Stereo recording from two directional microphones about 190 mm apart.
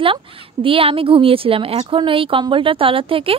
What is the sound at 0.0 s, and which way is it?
A woman's voice, 30° right (ahead or behind).